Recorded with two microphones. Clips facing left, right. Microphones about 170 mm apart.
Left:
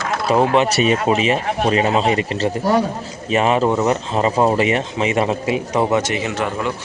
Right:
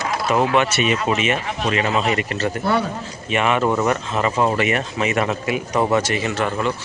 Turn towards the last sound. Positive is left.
turn(degrees=15)  # may be behind; listen again after turning